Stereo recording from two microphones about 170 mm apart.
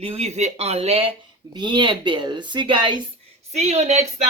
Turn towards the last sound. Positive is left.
turn(degrees=-40)  # may be behind; listen again after turning